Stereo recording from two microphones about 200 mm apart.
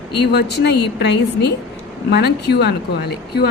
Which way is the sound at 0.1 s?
55° left (ahead or behind).